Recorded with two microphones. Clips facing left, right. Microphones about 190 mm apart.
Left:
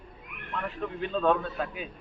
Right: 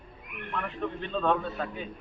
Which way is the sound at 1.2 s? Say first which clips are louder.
Left 1 dB; 5° left (ahead or behind).